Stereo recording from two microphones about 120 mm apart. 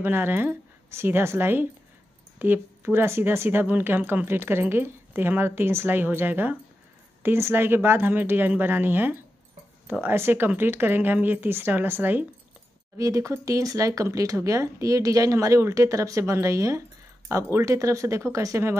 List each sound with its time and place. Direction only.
0.0 s speech: 15° right (ahead or behind)
12.9 s speech: 25° right (ahead or behind)